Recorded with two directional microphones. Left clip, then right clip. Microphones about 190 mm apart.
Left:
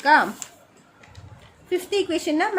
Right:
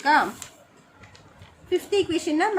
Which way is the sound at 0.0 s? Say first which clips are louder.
Left 3 dB; 30° left (ahead or behind).